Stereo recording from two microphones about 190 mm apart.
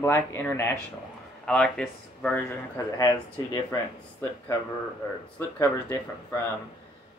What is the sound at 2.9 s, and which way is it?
Speech, 20° left (ahead or behind).